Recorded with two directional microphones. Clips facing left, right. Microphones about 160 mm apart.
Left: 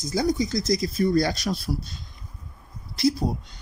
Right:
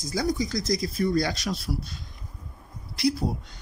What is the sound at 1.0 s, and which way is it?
Speech, 40° left (ahead or behind).